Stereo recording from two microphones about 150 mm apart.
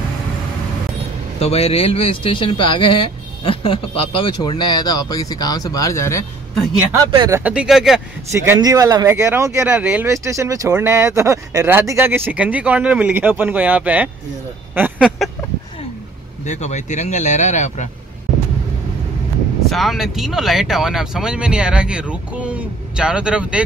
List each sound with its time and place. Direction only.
1.4 s speech: 40° left (ahead or behind); by 6.2 s 20° left (ahead or behind)
6.9 s speech: 20° right (ahead or behind)
7.5 s speech: centre (ahead or behind)
8.3 s speech: 20° right (ahead or behind)
10.0 s speech: 20° right (ahead or behind)
15.0 s a sound: centre (ahead or behind)
16.4 s speech: 50° left (ahead or behind)
19.7 s speech: centre (ahead or behind)